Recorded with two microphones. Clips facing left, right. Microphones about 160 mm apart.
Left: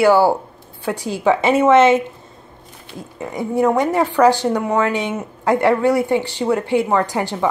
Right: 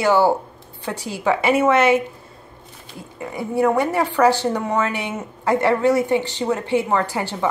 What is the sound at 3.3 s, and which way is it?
A woman's voice, 15° left (ahead or behind).